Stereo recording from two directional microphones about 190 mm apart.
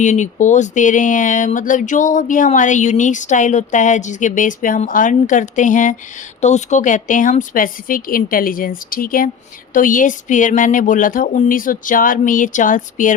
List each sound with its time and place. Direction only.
0.0 s speech: 40° left (ahead or behind)